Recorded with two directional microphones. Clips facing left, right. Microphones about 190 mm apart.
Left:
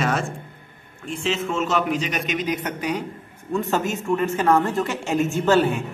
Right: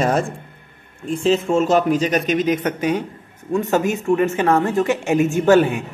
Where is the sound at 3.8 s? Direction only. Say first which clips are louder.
Right 5 dB; 15° right (ahead or behind).